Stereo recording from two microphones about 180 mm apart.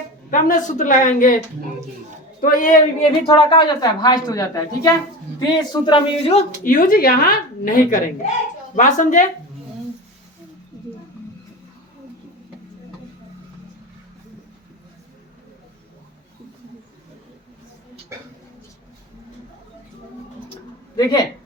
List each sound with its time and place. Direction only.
0.3 s a woman's voice: 45° left (ahead or behind)
2.4 s a woman's voice: 45° left (ahead or behind)
3.2 s a woman's voice: 25° left (ahead or behind)
6.7 s a woman's voice: 50° left (ahead or behind)
20.9 s speech: 25° left (ahead or behind)